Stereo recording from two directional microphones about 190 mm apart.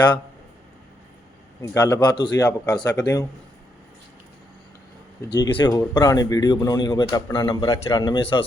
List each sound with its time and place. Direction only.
1.6 s speech: 15° left (ahead or behind)
5.3 s speech: 25° left (ahead or behind)